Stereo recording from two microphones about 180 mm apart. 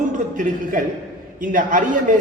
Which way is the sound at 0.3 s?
50° right (ahead or behind).